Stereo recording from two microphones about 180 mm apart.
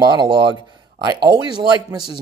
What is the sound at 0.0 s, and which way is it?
Speech, 25° right (ahead or behind).